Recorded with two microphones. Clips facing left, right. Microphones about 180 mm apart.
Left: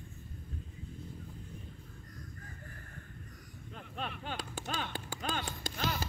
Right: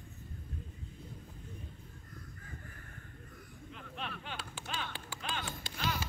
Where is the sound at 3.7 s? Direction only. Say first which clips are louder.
Left 3 dB; 40° left (ahead or behind).